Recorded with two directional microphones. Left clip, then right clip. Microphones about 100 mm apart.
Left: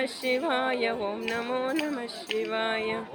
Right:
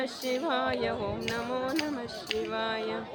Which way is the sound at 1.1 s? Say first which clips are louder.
Left 2 dB; 5° left (ahead or behind).